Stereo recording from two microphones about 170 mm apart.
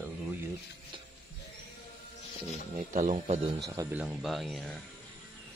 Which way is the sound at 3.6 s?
20° right (ahead or behind).